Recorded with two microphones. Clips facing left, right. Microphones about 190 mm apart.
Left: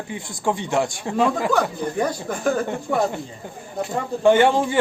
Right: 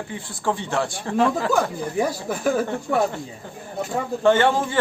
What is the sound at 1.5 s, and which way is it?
Speech, 5° right (ahead or behind).